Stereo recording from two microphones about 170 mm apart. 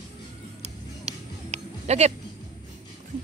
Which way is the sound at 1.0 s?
40° right (ahead or behind).